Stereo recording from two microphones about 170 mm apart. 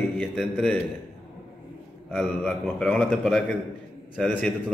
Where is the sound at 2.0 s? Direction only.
Centre (ahead or behind).